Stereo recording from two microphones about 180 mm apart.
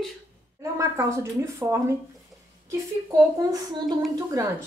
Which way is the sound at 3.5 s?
20° right (ahead or behind).